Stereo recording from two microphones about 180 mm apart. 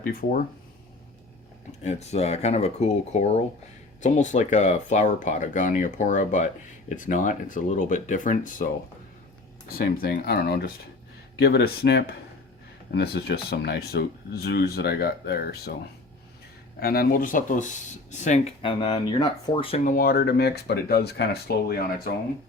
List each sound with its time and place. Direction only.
0.0 s speech: 50° left (ahead or behind)
1.8 s speech: 40° left (ahead or behind)
9.7 s speech: 60° left (ahead or behind)
16.8 s speech: 55° left (ahead or behind); by 19.8 s 30° left (ahead or behind)
19.8 s speech: 50° left (ahead or behind)